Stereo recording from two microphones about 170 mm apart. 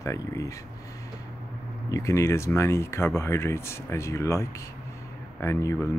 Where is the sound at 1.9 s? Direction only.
20° left (ahead or behind).